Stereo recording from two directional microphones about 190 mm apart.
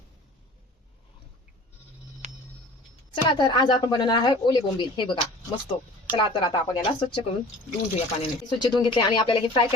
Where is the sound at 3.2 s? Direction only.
25° left (ahead or behind).